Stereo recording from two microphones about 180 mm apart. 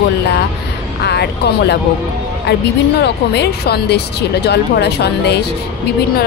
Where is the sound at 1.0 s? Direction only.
65° left (ahead or behind).